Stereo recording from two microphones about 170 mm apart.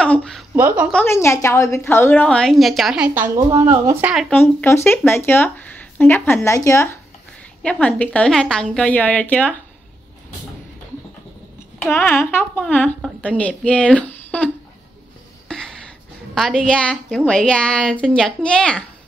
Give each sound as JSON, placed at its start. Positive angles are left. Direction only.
{"t": 0.0, "sound": "a sound", "side_deg": 5}
{"t": 0.6, "sound": "speech", "side_deg": -10}
{"t": 1.0, "sound": "speech", "side_deg": 15}
{"t": 3.3, "sound": "speech", "side_deg": -25}
{"t": 4.3, "sound": "speech", "side_deg": 10}
{"t": 11.8, "sound": "speech", "side_deg": 10}
{"t": 15.4, "sound": "a sound", "side_deg": 5}
{"t": 16.3, "sound": "a woman's voice", "side_deg": 5}